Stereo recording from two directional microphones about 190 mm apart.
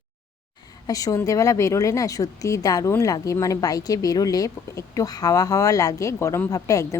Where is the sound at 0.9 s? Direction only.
20° left (ahead or behind).